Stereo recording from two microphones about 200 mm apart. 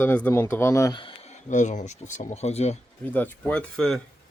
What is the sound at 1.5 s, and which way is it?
Speech, 40° left (ahead or behind).